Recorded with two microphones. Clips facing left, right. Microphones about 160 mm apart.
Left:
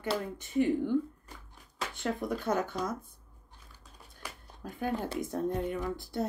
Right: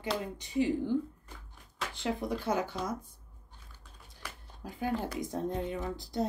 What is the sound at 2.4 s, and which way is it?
Speech, 50° left (ahead or behind).